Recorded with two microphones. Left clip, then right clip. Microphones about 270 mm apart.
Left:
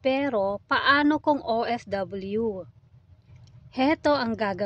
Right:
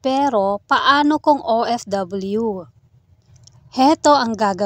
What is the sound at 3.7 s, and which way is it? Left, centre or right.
Speech, right.